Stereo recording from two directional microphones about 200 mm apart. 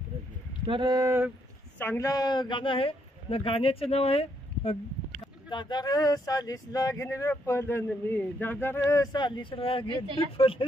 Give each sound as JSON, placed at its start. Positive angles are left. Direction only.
{"t": 0.7, "sound": "speech", "side_deg": -20}
{"t": 1.8, "sound": "a woman's voice", "side_deg": 10}